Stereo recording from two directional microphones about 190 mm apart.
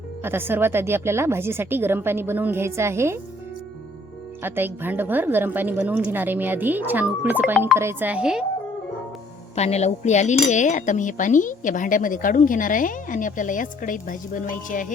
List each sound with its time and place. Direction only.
0.2 s a woman's voice: 10° right (ahead or behind)
4.4 s a woman's voice: 10° right (ahead or behind)
9.6 s cutlery: 35° left (ahead or behind)